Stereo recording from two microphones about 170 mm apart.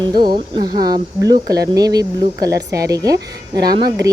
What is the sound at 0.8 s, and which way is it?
Speech, 25° right (ahead or behind).